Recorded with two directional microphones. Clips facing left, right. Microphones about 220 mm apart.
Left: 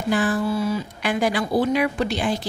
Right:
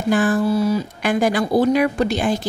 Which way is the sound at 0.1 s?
45° right (ahead or behind).